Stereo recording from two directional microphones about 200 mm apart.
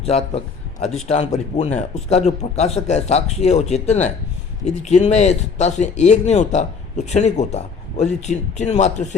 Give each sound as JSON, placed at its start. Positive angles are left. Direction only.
{"t": 0.0, "sound": "a man's voice", "side_deg": 30}